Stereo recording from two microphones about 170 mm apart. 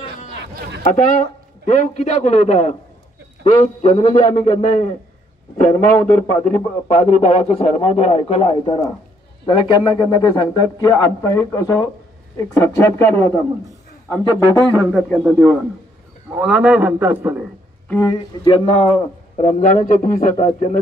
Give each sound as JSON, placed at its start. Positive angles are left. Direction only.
{"t": 0.8, "sound": "a man's voice", "side_deg": 45}
{"t": 5.9, "sound": "speech", "side_deg": 10}
{"t": 6.9, "sound": "a man's voice", "side_deg": 45}
{"t": 14.7, "sound": "a man's voice", "side_deg": -15}
{"t": 15.0, "sound": "a man's voice", "side_deg": 0}
{"t": 18.0, "sound": "a man's voice", "side_deg": 25}